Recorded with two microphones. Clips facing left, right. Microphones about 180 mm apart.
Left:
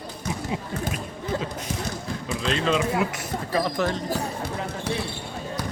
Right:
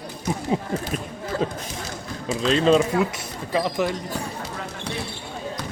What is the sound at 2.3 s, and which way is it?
Speech, 35° right (ahead or behind).